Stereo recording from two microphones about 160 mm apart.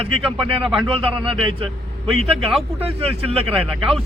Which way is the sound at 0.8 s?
35° right (ahead or behind).